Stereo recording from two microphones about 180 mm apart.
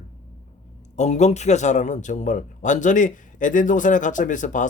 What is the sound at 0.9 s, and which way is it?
A man's voice, 40° left (ahead or behind).